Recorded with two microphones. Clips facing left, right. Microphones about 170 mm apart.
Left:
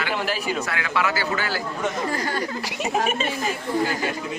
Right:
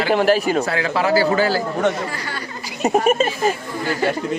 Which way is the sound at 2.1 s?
45° left (ahead or behind).